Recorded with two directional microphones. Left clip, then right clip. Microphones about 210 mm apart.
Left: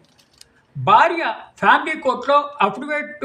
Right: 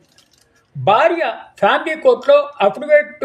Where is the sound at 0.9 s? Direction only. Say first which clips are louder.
Right 1 dB; 5° right (ahead or behind).